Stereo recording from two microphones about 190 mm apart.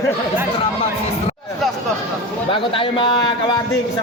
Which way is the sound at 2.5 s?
25° left (ahead or behind).